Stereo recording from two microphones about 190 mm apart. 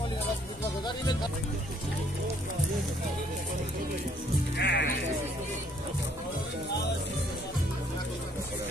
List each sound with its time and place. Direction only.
4.6 s music: 65° left (ahead or behind)